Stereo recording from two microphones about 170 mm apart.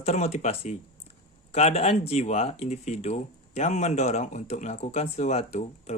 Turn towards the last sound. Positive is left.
turn(degrees=40)  # may be behind; listen again after turning